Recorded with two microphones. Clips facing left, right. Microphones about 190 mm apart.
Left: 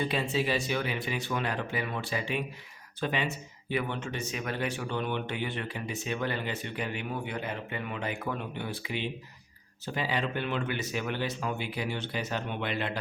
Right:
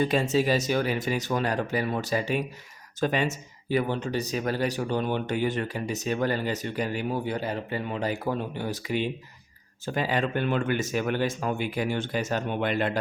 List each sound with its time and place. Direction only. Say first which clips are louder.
0.0 s speech: right 6 dB; 45° right (ahead or behind)